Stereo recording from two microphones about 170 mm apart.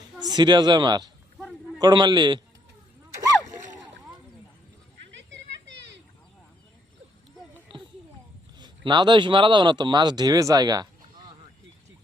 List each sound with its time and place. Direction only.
0.2 s a woman's voice: 25° right (ahead or behind)
7.7 s a sound: 30° right (ahead or behind)
8.5 s speech: 25° right (ahead or behind)